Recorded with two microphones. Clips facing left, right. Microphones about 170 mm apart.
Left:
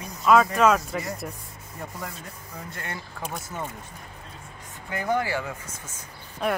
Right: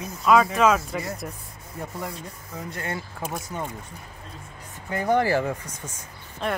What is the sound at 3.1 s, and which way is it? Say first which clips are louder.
Speech: right 2 dB; 5° right (ahead or behind).